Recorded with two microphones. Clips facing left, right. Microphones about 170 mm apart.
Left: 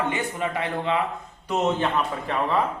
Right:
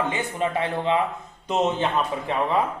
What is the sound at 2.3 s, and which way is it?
Speech, 20° right (ahead or behind).